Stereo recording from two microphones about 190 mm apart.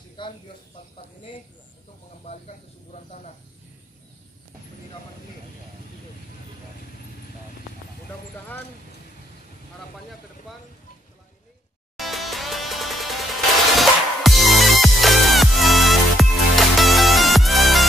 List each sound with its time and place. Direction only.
2.2 s speech: 35° left (ahead or behind)
12.0 s music: centre (ahead or behind)